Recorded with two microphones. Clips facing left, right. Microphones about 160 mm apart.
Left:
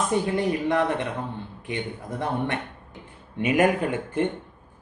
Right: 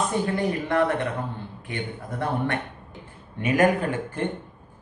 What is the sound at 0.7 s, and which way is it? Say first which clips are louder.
Speech: right 1 dB; 20° left (ahead or behind).